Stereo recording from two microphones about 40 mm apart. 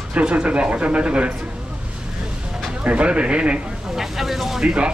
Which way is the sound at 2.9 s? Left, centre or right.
Right.